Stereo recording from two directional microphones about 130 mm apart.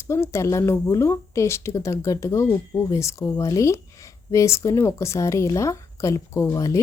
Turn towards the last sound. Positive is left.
turn(degrees=25)  # may be behind; listen again after turning